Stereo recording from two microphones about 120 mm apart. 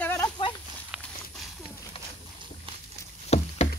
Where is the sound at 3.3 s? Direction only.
65° left (ahead or behind).